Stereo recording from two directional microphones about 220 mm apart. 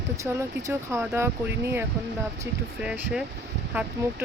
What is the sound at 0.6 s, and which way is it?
Speech, 15° right (ahead or behind).